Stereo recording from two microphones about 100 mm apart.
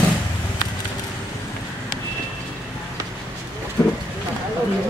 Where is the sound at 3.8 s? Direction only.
25° left (ahead or behind).